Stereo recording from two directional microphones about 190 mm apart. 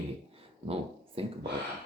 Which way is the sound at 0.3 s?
30° right (ahead or behind).